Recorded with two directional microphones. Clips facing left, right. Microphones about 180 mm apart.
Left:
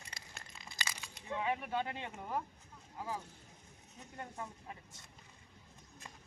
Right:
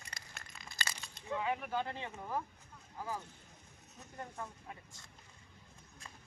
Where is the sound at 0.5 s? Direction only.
25° left (ahead or behind).